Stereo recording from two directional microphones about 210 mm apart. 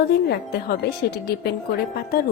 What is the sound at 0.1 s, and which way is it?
A woman's voice, 50° left (ahead or behind).